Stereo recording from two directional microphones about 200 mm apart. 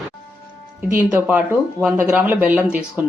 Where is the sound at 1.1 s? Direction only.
5° right (ahead or behind).